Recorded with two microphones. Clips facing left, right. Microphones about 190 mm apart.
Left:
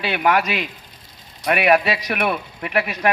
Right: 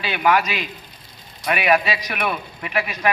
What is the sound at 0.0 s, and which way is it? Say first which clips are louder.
Speech: even; 60° left (ahead or behind).